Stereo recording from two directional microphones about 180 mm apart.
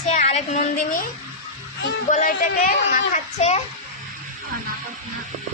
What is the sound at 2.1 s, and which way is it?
A woman's voice, 45° left (ahead or behind).